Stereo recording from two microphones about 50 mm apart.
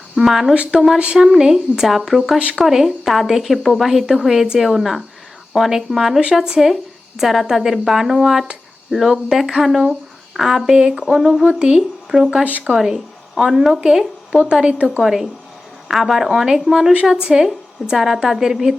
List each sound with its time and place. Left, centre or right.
0.2 s a woman's voice: centre
0.5 s speech: right
1.2 s a woman's voice: centre
10.8 s a woman's voice: centre
12.5 s speech: right
12.7 s a woman's voice: centre
15.0 s a woman's voice: centre